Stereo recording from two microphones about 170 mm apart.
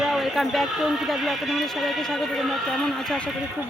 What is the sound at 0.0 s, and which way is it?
Speech, centre (ahead or behind).